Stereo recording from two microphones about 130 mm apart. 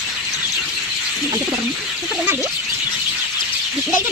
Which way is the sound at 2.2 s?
15° right (ahead or behind).